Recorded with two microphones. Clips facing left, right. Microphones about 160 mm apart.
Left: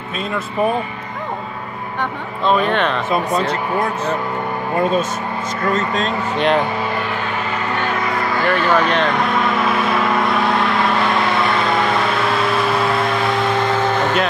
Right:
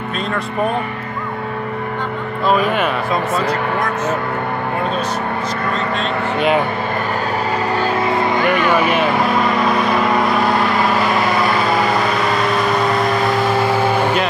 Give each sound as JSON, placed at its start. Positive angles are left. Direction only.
{"t": 2.4, "sound": "speech", "side_deg": -5}
{"t": 5.8, "sound": "speech", "side_deg": 40}
{"t": 7.7, "sound": "vehicle", "side_deg": -30}